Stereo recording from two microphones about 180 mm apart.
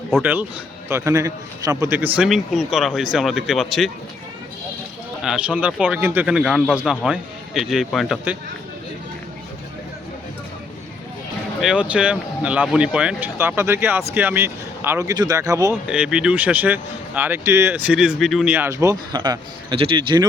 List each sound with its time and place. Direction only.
0.2 s speech: 10° right (ahead or behind)
2.1 s speech: 5° right (ahead or behind)
5.2 s speech: 5° right (ahead or behind)
11.6 s speech: 5° right (ahead or behind)
15.9 s speech: 5° right (ahead or behind)
18.5 s speech: 15° right (ahead or behind)